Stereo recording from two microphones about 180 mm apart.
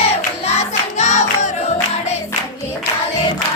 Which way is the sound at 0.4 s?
35° left (ahead or behind).